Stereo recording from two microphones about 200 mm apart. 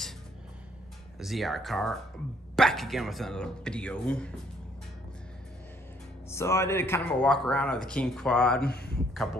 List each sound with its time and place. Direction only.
1.2 s speech: centre (ahead or behind)
6.3 s speech: 15° left (ahead or behind)
8.6 s speech: 55° left (ahead or behind)
8.9 s speech: centre (ahead or behind)